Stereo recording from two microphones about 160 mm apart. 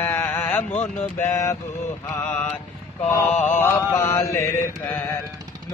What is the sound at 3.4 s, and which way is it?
Mantra, 15° left (ahead or behind).